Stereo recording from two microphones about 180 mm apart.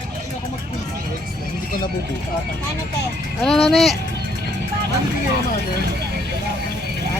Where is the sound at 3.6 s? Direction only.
Centre (ahead or behind).